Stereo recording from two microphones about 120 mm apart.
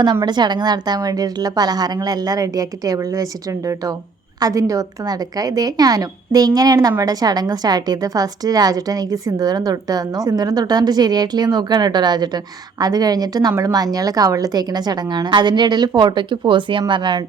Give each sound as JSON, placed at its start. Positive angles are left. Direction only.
{"t": 0.3, "sound": "a woman's voice", "side_deg": -35}
{"t": 4.4, "sound": "a woman's voice", "side_deg": -30}